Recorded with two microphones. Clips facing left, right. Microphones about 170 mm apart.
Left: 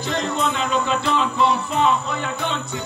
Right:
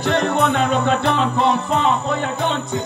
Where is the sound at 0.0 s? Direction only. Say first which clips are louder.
Right 5 dB; 60° right (ahead or behind).